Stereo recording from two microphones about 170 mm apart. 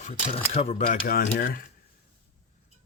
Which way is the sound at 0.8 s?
60° left (ahead or behind).